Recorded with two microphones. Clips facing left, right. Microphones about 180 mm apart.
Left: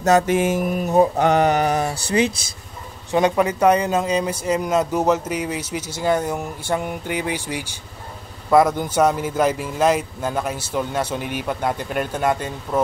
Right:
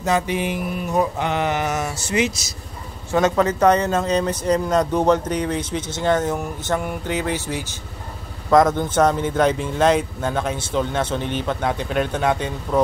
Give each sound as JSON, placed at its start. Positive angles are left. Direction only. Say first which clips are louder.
{"t": 0.0, "sound": "mantra", "louder": "left 5 dB", "side_deg": 45}
{"t": 0.9, "sound": "speech", "louder": "left 6 dB", "side_deg": 40}
{"t": 3.1, "sound": "speech", "louder": "even", "side_deg": 15}